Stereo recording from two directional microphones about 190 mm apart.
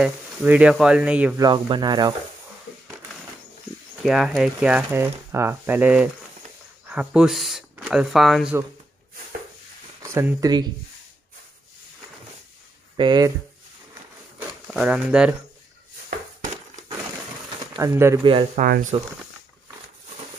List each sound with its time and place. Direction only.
0.0 s speech: 5° right (ahead or behind)
1.4 s speech: 20° right (ahead or behind)
4.0 s speech: centre (ahead or behind)
10.1 s speech: 15° right (ahead or behind)
12.9 s speech: 25° right (ahead or behind)
14.7 s speech: 5° right (ahead or behind)
17.7 s speech: 15° right (ahead or behind)
18.2 s speech: 30° right (ahead or behind)
18.6 s speech: 45° right (ahead or behind)